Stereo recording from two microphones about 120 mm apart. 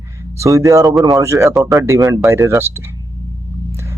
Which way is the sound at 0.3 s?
25° right (ahead or behind).